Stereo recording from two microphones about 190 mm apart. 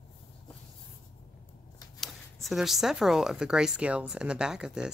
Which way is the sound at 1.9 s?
Centre (ahead or behind).